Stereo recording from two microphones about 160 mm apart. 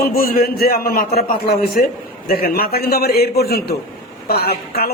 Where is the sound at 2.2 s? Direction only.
70° left (ahead or behind); by 3.7 s 90° left.